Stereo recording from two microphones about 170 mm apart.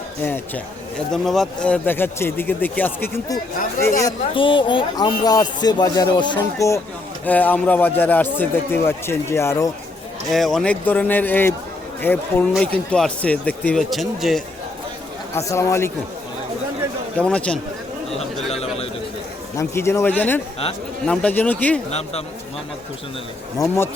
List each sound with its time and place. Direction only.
0.2 s speech: 10° left (ahead or behind)
4.4 s speech: 30° left (ahead or behind)
10.2 s speech: centre (ahead or behind)
15.4 s speech: 15° left (ahead or behind)
17.2 s speech: 5° left (ahead or behind)
18.5 s a man's voice: 35° left (ahead or behind)
19.5 s speech: 15° left (ahead or behind)
21.8 s a man's voice: 40° left (ahead or behind)
23.6 s speech: 15° left (ahead or behind)